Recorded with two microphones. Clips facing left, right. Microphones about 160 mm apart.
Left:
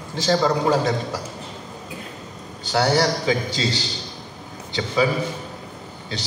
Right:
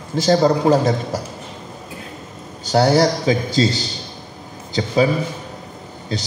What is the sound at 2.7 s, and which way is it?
Speech, 40° right (ahead or behind).